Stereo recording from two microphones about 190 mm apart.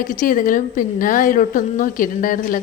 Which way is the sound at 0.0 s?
45° left (ahead or behind).